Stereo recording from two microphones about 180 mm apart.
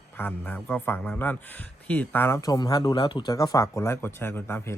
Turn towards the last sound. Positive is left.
turn(degrees=10)  # may be behind; listen again after turning